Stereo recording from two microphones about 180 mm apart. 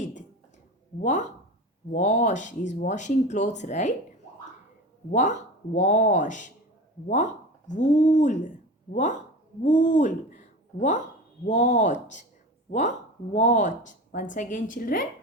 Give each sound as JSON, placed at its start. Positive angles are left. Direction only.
{"t": 0.0, "sound": "a sound", "side_deg": 45}
{"t": 1.0, "sound": "speech", "side_deg": 40}
{"t": 5.1, "sound": "speech", "side_deg": 45}
{"t": 7.7, "sound": "speech", "side_deg": 45}